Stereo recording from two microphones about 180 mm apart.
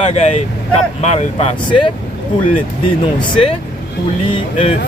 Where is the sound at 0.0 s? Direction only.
35° left (ahead or behind).